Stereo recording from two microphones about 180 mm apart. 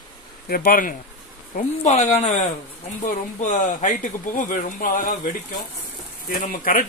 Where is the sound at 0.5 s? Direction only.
55° left (ahead or behind).